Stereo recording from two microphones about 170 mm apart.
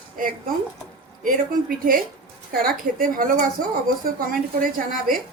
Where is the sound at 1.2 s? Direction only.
55° right (ahead or behind).